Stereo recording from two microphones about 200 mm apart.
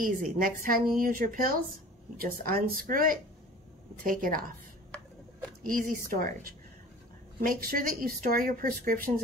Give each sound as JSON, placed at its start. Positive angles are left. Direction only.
{"t": 0.0, "sound": "a woman's voice", "side_deg": -45}
{"t": 5.6, "sound": "a woman's voice", "side_deg": -45}